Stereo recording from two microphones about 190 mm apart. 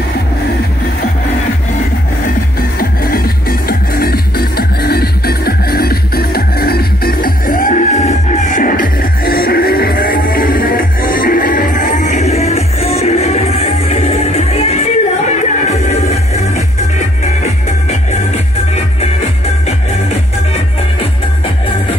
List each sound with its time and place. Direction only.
2.8 s music: 50° left (ahead or behind); by 16.2 s 35° left (ahead or behind)